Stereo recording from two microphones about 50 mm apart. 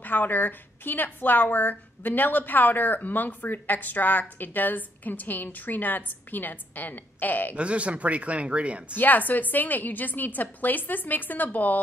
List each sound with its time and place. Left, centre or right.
0.0 s a woman's voice: left
7.5 s speech: right
8.9 s a woman's voice: left